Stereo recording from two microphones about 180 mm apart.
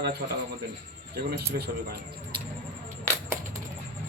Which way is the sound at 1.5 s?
65° right (ahead or behind).